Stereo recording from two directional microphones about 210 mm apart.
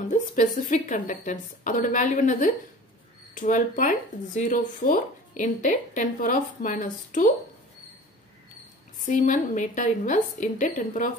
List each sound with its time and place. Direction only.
0.1 s a woman's voice: 35° left (ahead or behind)
9.0 s a woman's voice: 35° left (ahead or behind)